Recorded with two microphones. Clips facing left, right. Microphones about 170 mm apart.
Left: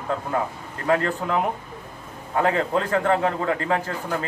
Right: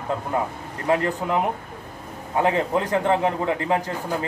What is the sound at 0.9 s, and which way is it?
A man's voice, 20° right (ahead or behind).